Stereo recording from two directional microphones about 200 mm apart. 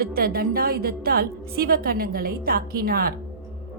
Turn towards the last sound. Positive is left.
turn(degrees=-50)  # may be behind; listen again after turning